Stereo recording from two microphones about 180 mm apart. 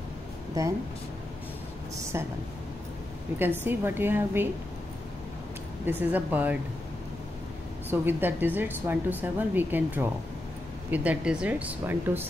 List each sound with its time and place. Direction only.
2.1 s a woman's voice: 15° right (ahead or behind)
3.3 s a woman's voice: 10° right (ahead or behind)
5.9 s a woman's voice: 10° right (ahead or behind)
7.9 s a woman's voice: 10° right (ahead or behind)